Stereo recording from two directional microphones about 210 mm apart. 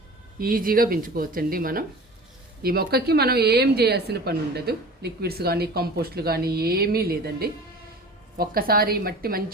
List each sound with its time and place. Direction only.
0.3 s a woman's voice: 45° right (ahead or behind)